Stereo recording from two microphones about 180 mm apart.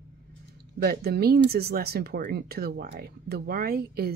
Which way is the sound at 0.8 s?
60° right (ahead or behind).